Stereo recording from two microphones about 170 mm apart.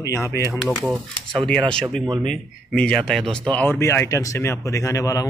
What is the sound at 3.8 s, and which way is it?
Speech, 15° left (ahead or behind).